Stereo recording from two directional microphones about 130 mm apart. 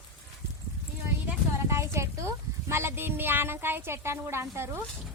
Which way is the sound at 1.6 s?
20° right (ahead or behind).